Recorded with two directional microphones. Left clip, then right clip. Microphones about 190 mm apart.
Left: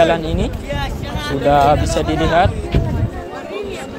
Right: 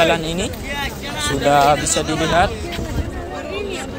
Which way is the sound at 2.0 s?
50° left (ahead or behind).